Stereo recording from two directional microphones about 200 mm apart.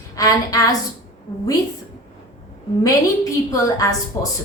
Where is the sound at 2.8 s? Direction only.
15° left (ahead or behind).